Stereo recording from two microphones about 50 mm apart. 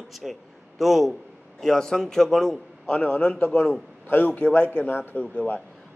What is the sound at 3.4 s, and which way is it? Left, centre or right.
Speech, left.